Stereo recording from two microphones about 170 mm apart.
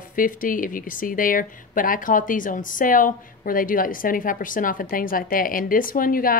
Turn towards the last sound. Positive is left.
turn(degrees=55)  # may be behind; listen again after turning